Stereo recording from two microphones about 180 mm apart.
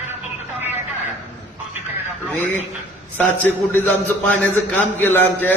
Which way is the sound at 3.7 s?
10° left (ahead or behind).